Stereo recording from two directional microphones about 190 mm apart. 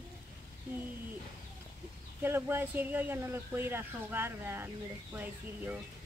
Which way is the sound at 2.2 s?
10° right (ahead or behind).